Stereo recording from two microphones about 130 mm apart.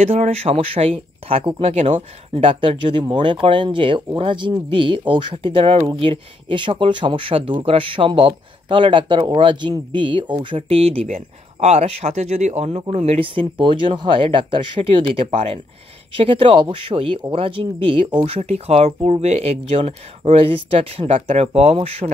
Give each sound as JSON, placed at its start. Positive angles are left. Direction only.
{"t": 0.0, "sound": "speech", "side_deg": -50}